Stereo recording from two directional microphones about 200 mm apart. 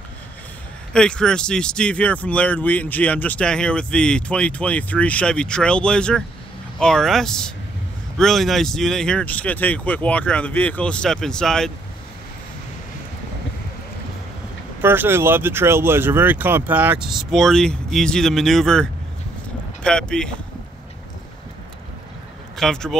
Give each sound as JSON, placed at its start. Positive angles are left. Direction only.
{"t": 0.9, "sound": "speech", "side_deg": 5}
{"t": 14.8, "sound": "speech", "side_deg": -10}
{"t": 22.6, "sound": "speech", "side_deg": 0}